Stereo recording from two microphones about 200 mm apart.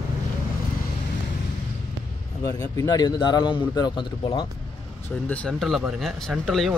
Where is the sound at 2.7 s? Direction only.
20° left (ahead or behind).